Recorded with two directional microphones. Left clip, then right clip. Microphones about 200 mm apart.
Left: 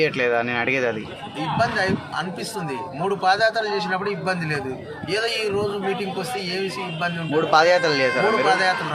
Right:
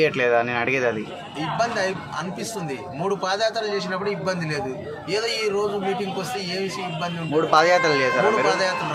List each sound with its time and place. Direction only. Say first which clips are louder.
0.0 s speech: right 1 dB; centre (ahead or behind)